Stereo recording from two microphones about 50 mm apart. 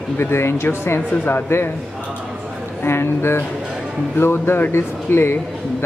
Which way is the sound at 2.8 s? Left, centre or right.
Left.